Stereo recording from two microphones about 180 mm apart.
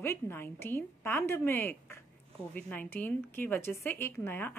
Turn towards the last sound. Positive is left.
turn(degrees=10)  # may be behind; listen again after turning